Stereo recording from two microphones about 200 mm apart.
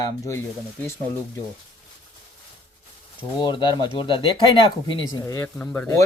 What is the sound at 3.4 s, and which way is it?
Speech, 20° left (ahead or behind).